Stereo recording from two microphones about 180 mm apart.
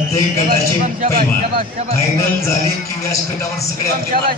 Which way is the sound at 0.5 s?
55° right (ahead or behind).